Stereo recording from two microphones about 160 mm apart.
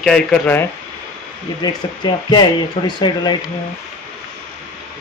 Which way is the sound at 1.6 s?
25° left (ahead or behind).